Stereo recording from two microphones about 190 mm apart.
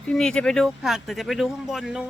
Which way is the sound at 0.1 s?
5° left (ahead or behind).